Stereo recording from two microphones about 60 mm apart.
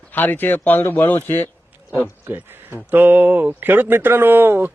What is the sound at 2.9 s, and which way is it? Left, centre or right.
Speech, right.